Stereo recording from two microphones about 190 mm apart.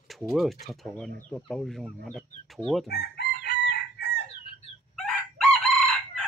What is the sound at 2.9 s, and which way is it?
Chicken, 60° left (ahead or behind).